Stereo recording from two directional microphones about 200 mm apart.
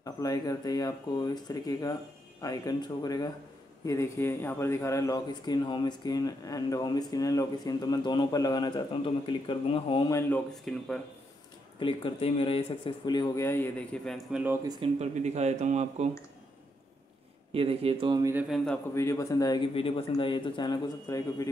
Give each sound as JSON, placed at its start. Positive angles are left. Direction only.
{"t": 0.0, "sound": "speech", "side_deg": 15}
{"t": 10.7, "sound": "speech", "side_deg": 0}
{"t": 11.8, "sound": "speech", "side_deg": 25}
{"t": 14.7, "sound": "speech", "side_deg": -30}
{"t": 17.6, "sound": "speech", "side_deg": -30}
{"t": 18.9, "sound": "speech", "side_deg": 15}